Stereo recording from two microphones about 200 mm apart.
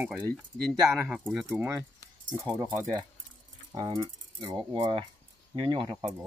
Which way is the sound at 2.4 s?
15° right (ahead or behind).